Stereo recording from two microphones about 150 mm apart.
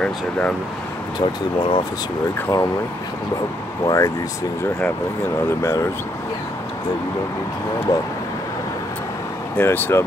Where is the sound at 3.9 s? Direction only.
20° left (ahead or behind).